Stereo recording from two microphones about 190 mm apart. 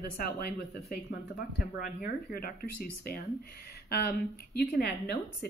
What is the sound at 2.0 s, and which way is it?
Speech, 50° left (ahead or behind).